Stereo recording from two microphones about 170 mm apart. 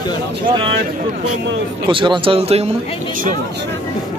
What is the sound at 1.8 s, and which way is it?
Speech, 30° right (ahead or behind).